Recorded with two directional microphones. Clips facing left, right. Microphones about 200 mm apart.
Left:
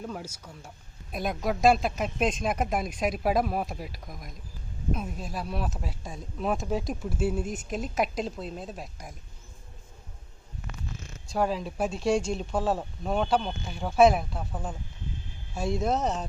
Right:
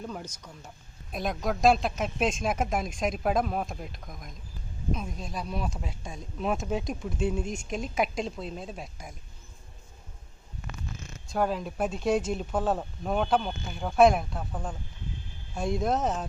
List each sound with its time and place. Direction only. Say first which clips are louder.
0.0 s speech: left 1 dB; 5° left (ahead or behind)
11.3 s speech: even; centre (ahead or behind)